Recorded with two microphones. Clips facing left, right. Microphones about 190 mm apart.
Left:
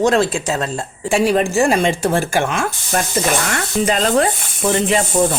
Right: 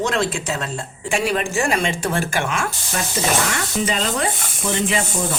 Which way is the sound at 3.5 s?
50° left (ahead or behind).